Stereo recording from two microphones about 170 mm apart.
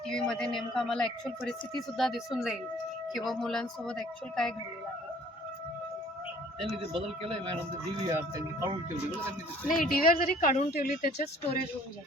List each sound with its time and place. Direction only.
0.1 s speech: 5° left (ahead or behind)
6.9 s speech: 30° right (ahead or behind)
8.0 s speech: 20° right (ahead or behind)
9.6 s speech: 55° left (ahead or behind)